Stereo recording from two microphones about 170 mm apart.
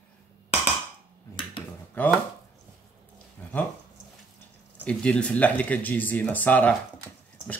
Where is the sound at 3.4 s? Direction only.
10° left (ahead or behind).